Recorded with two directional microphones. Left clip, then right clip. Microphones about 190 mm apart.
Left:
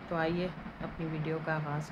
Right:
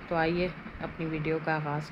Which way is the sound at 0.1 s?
15° right (ahead or behind).